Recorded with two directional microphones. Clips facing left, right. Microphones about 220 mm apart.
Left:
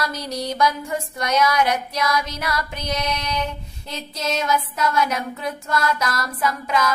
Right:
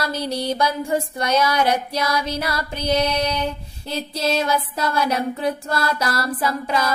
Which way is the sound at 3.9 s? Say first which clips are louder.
Right 4 dB; 30° right (ahead or behind).